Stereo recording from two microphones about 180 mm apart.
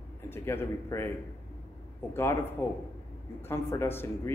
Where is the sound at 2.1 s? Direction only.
15° left (ahead or behind).